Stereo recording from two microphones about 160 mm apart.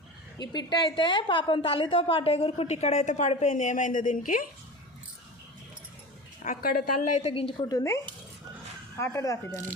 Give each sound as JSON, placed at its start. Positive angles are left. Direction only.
{"t": 0.3, "sound": "a woman's voice", "side_deg": 25}
{"t": 6.4, "sound": "a woman's voice", "side_deg": 60}
{"t": 7.7, "sound": "speech", "side_deg": 20}